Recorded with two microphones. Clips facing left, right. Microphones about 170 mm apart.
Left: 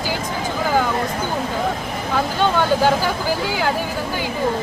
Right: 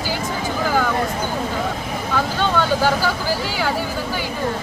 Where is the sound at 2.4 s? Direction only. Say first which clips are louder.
Left 2 dB; 15° left (ahead or behind).